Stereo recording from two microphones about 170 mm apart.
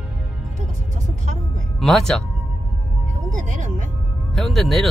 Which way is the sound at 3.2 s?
45° right (ahead or behind).